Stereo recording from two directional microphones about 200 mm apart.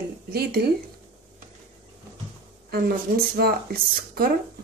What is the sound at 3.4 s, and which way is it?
Speech, 50° right (ahead or behind).